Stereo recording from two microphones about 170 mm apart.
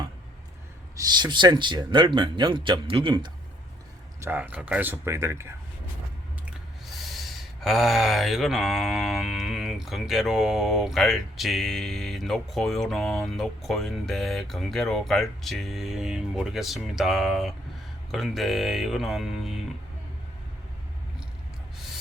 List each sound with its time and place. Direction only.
0.9 s speech: 25° right (ahead or behind)
4.2 s speech: 10° right (ahead or behind)
6.5 s speech: centre (ahead or behind)